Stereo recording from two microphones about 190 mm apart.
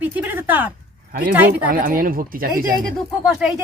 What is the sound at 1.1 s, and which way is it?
Speech, 50° right (ahead or behind).